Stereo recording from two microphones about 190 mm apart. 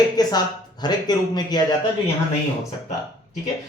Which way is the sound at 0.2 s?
20° left (ahead or behind).